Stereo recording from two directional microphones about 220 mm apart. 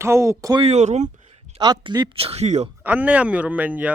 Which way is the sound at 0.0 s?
10° right (ahead or behind).